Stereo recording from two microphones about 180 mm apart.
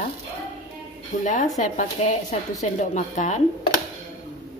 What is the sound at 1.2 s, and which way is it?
Speech, 45° left (ahead or behind).